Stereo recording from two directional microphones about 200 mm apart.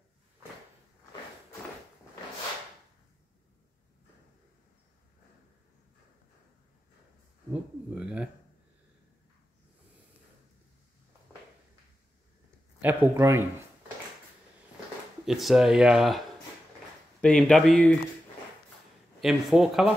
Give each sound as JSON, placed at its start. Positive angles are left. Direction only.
{"t": 7.9, "sound": "speech", "side_deg": -5}
{"t": 12.8, "sound": "speech", "side_deg": -10}
{"t": 15.2, "sound": "speech", "side_deg": 0}
{"t": 17.2, "sound": "speech", "side_deg": 5}
{"t": 19.2, "sound": "speech", "side_deg": 0}